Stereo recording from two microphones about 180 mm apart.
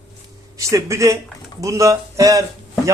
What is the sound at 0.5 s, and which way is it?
Speech, 15° right (ahead or behind).